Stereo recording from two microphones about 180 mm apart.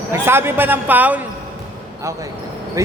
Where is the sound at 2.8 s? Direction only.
15° right (ahead or behind).